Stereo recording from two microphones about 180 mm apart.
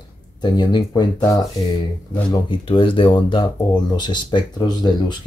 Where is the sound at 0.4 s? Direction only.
25° left (ahead or behind).